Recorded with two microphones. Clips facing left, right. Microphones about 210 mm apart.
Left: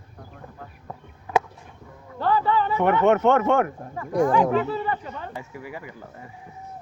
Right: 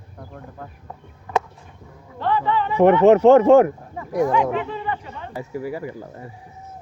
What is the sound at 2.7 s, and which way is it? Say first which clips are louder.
Speech: right 8 dB; 30° right (ahead or behind).